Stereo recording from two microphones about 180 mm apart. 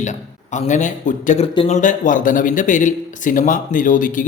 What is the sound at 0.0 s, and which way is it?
A man's voice, 40° left (ahead or behind).